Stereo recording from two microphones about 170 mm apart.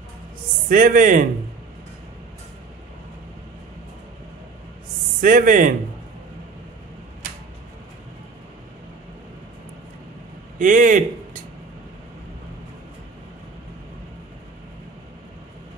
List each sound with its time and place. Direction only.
0.7 s speech: 55° right (ahead or behind)
5.2 s speech: 55° right (ahead or behind)
10.6 s speech: 50° right (ahead or behind)